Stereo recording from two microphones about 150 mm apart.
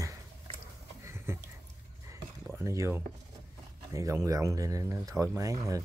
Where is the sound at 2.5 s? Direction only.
20° right (ahead or behind).